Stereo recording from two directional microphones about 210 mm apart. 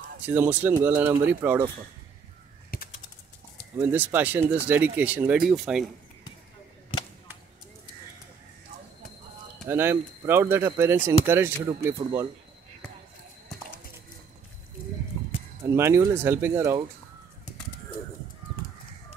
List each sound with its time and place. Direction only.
0.2 s speech: 10° right (ahead or behind)
2.7 s bird flight: 45° left (ahead or behind)
3.7 s speech: 10° right (ahead or behind)
9.7 s speech: 10° right (ahead or behind)
15.6 s speech: 10° right (ahead or behind)